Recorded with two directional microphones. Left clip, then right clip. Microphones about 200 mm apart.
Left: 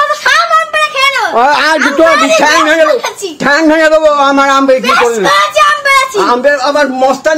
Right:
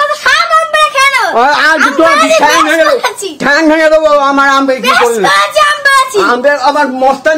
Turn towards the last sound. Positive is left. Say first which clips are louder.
# even
turn(degrees=20)  # may be behind; listen again after turning